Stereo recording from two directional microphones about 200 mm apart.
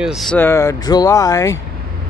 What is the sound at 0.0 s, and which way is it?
Speech, centre (ahead or behind).